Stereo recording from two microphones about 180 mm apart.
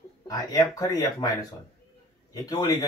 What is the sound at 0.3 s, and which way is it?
Speech, 20° left (ahead or behind).